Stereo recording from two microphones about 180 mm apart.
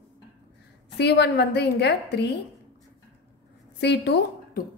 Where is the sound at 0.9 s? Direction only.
70° left (ahead or behind).